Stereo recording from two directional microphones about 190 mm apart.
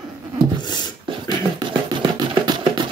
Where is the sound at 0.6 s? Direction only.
20° left (ahead or behind).